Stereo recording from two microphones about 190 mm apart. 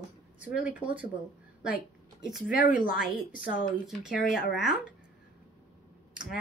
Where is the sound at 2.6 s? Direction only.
45° left (ahead or behind).